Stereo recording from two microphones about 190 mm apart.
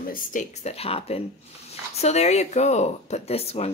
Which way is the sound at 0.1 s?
40° left (ahead or behind).